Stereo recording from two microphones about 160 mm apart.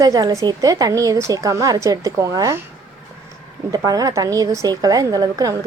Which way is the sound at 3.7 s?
25° right (ahead or behind).